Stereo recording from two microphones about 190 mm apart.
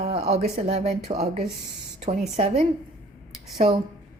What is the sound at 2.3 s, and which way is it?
Speech, 35° right (ahead or behind).